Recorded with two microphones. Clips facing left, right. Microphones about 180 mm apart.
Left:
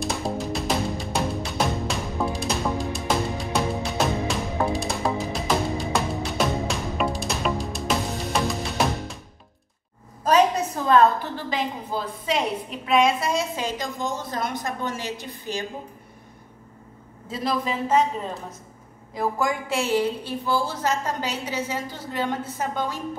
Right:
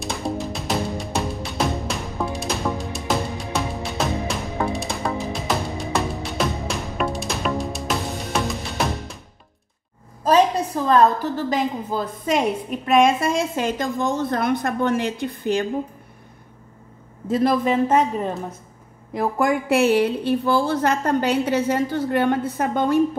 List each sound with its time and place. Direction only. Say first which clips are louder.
0.0 s music: right 1 dB; centre (ahead or behind)
10.2 s a woman's voice: right 2 dB; 30° right (ahead or behind); by 15.6 s 55° right (ahead or behind)
17.3 s a woman's voice: right 8 dB; 55° right (ahead or behind)
19.4 s a woman's voice: right 11 dB; 60° right (ahead or behind)